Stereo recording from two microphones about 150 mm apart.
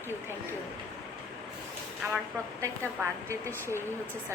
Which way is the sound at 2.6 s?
20° right (ahead or behind).